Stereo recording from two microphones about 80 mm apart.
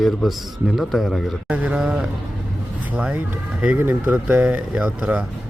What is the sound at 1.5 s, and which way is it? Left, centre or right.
Speech, centre.